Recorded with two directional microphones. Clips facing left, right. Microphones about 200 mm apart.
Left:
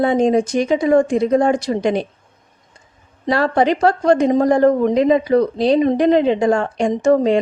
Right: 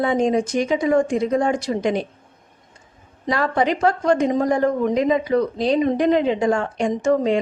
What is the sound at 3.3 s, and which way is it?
Speech, 35° left (ahead or behind).